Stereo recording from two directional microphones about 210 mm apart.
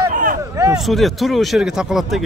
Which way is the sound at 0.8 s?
Centre (ahead or behind).